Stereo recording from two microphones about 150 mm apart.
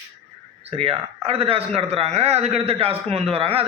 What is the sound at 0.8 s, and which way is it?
A man's voice, 40° right (ahead or behind).